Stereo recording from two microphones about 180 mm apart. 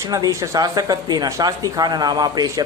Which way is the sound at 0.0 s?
20° right (ahead or behind).